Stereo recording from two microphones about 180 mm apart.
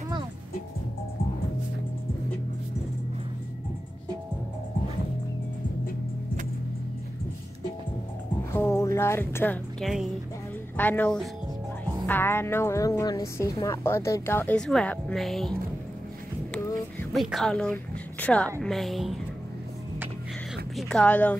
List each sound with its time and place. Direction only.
8.5 s music: 15° left (ahead or behind)
10.8 s a woman's voice: 10° left (ahead or behind)
16.6 s a sound: 20° left (ahead or behind)
17.1 s a woman's voice: centre (ahead or behind)
20.7 s speech: 5° left (ahead or behind)